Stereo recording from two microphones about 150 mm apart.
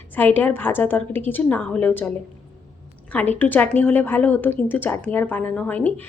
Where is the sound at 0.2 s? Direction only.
10° left (ahead or behind).